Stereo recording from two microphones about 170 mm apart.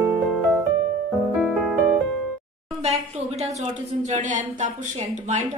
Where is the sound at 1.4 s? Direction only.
Centre (ahead or behind).